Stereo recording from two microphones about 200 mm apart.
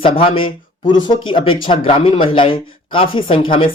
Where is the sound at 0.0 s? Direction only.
25° left (ahead or behind).